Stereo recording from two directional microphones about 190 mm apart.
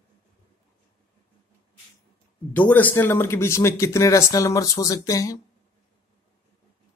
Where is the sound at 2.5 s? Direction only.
10° left (ahead or behind).